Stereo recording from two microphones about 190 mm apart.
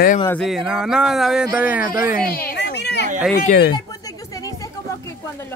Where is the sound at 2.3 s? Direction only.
50° left (ahead or behind).